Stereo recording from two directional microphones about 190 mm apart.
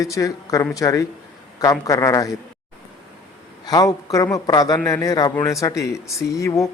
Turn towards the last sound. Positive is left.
turn(degrees=15)  # may be behind; listen again after turning